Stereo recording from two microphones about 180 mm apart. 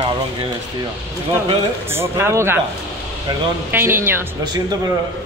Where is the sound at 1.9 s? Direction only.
15° right (ahead or behind).